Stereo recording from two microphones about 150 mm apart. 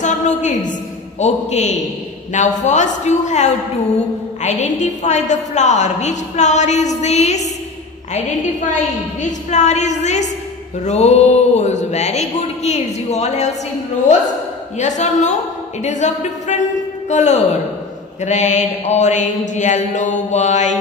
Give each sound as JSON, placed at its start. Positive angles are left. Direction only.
{"t": 0.0, "sound": "a woman's voice", "side_deg": 55}
{"t": 14.8, "sound": "a woman's voice", "side_deg": 55}